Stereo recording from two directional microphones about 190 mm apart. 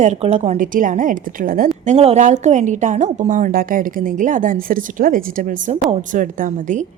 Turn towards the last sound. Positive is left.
turn(degrees=-40)  # may be behind; listen again after turning